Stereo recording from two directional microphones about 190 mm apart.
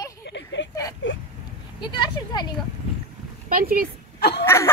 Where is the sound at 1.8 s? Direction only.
25° left (ahead or behind).